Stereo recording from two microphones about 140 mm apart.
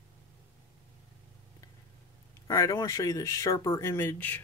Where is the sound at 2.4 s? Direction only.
25° left (ahead or behind).